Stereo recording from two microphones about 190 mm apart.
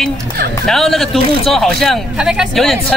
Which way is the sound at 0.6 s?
Centre (ahead or behind).